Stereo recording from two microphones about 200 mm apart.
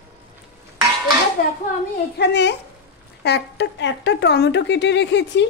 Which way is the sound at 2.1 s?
60° left (ahead or behind).